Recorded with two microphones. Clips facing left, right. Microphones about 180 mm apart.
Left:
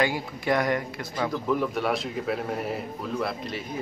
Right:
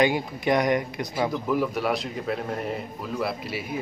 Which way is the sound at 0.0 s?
20° right (ahead or behind).